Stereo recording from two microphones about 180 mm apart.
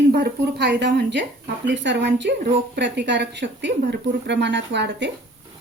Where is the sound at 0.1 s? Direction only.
65° right (ahead or behind).